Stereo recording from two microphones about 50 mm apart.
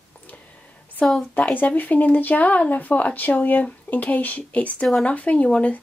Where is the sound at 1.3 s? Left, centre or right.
Left.